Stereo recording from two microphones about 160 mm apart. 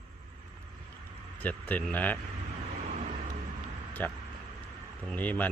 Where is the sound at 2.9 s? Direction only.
45° right (ahead or behind).